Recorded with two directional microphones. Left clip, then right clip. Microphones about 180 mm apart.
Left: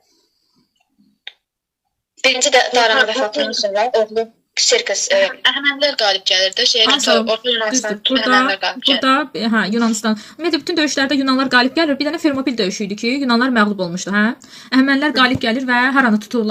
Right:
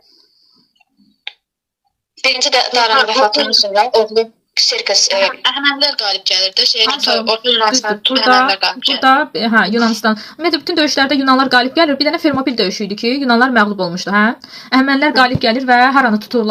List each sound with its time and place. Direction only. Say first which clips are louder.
2.2 s a woman's voice: even; 20° right (ahead or behind)
9.0 s speech: right 5 dB; 20° left (ahead or behind)
12.7 s speech: right 3 dB; 15° right (ahead or behind)
13.1 s speech: right 4 dB; 20° left (ahead or behind)